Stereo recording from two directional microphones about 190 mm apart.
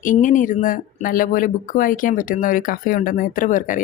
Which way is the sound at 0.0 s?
45° left (ahead or behind).